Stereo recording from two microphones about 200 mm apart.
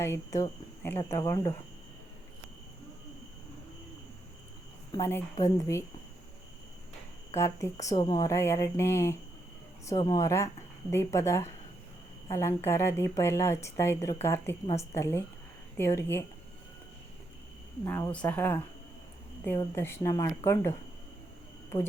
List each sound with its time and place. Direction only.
0.0 s speech: 15° left (ahead or behind)
4.9 s speech: 15° left (ahead or behind)
7.3 s speech: 15° left (ahead or behind)
17.8 s speech: 10° left (ahead or behind)